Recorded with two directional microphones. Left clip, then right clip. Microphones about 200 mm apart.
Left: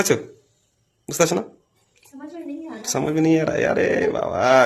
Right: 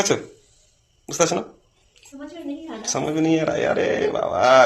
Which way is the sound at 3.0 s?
45° left (ahead or behind).